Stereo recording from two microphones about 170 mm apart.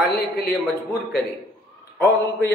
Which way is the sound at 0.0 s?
60° left (ahead or behind).